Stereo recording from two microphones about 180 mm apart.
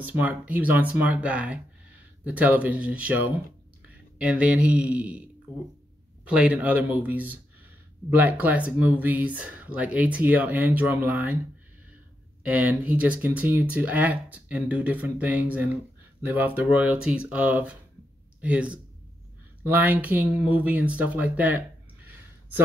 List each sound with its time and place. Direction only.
0.0 s speech: 10° right (ahead or behind)
4.2 s speech: 5° right (ahead or behind)
12.4 s speech: 10° right (ahead or behind)